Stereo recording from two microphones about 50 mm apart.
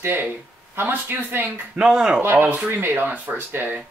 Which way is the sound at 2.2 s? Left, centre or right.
Right.